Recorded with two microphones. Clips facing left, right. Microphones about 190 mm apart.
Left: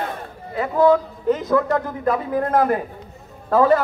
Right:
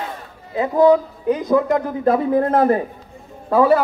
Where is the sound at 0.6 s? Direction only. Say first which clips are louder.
Right 2 dB; 15° right (ahead or behind).